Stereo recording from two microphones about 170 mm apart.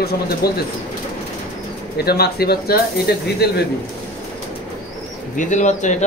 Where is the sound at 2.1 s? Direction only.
65° left (ahead or behind).